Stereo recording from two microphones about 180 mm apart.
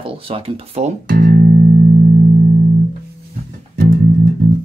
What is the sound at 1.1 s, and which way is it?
Music, 55° right (ahead or behind).